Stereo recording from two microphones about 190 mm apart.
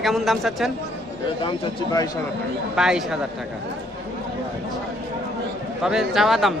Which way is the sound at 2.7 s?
5° right (ahead or behind).